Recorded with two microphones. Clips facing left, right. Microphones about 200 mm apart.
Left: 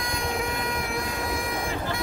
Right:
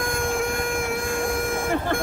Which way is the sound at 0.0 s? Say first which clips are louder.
Right 5 dB; 50° right (ahead or behind).